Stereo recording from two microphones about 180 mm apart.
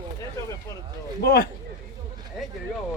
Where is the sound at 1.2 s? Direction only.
55° left (ahead or behind).